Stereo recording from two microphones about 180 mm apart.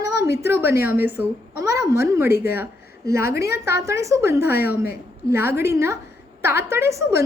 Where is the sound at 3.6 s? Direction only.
15° right (ahead or behind).